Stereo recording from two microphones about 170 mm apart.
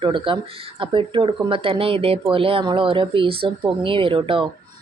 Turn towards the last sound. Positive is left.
turn(degrees=-30)  # may be behind; listen again after turning